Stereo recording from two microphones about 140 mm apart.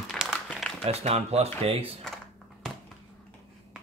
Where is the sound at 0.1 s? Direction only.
Centre (ahead or behind).